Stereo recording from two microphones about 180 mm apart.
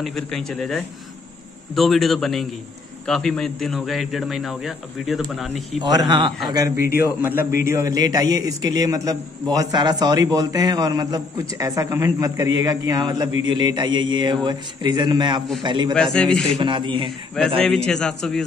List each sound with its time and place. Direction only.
0.0 s a man's voice: centre (ahead or behind)
5.8 s a man's voice: 25° right (ahead or behind)
7.2 s a man's voice: 10° right (ahead or behind)
15.9 s a man's voice: 5° left (ahead or behind)
16.5 s a man's voice: 25° right (ahead or behind)
17.6 s a man's voice: 5° left (ahead or behind)